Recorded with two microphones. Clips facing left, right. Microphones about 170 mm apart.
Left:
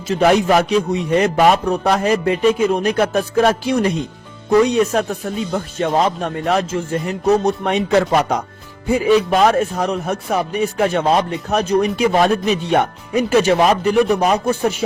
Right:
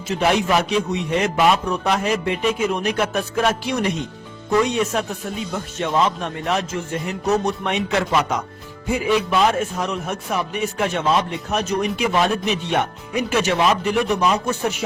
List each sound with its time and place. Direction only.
0.2 s speech: 40° left (ahead or behind)
14.2 s speech: 60° left (ahead or behind)
14.4 s speech: 30° left (ahead or behind)